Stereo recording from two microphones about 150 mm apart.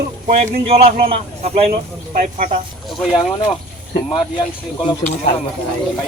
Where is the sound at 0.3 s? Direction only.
45° right (ahead or behind).